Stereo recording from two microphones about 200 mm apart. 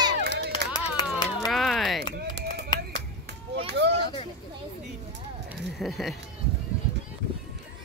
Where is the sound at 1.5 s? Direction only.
Centre (ahead or behind).